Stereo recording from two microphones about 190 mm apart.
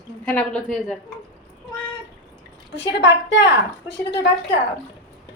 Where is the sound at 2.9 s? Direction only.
65° left (ahead or behind).